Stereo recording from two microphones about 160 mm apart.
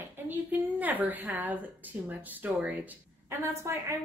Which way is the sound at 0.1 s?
10° right (ahead or behind).